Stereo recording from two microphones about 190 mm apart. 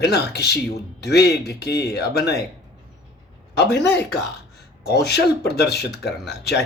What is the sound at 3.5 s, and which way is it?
Speech, 60° left (ahead or behind).